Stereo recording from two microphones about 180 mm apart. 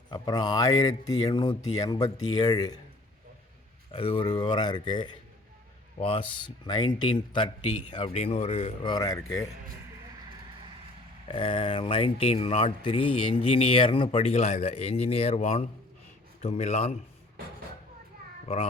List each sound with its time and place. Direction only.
0.1 s speech: 20° left (ahead or behind)
3.9 s speech: 30° left (ahead or behind)
8.8 s speech: 25° left (ahead or behind)
11.3 s speech: 30° left (ahead or behind)
18.4 s speech: 35° left (ahead or behind)